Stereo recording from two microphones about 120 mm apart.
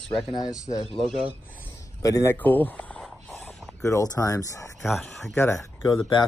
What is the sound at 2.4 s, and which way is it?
Speech, 15° left (ahead or behind).